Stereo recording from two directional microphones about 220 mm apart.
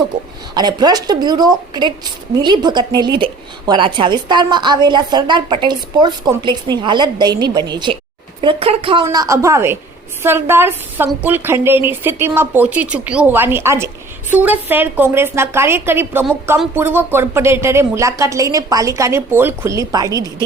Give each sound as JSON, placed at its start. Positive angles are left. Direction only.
{"t": 0.5, "sound": "a woman's voice", "side_deg": -20}
{"t": 9.0, "sound": "a woman's voice", "side_deg": -15}